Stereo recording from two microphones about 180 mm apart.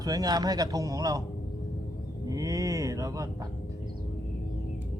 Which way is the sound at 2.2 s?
20° right (ahead or behind).